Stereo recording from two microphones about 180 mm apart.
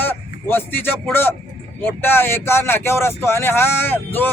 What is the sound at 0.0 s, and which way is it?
Speech, 10° left (ahead or behind).